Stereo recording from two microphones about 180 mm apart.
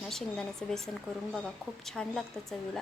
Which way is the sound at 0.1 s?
5° left (ahead or behind).